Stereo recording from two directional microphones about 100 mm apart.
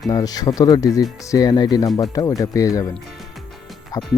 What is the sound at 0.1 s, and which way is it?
Speech, 40° left (ahead or behind).